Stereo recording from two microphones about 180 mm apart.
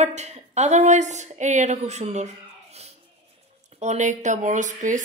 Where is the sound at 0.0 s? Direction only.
40° right (ahead or behind).